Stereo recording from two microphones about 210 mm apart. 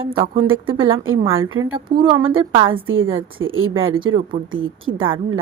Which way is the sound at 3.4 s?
70° right (ahead or behind).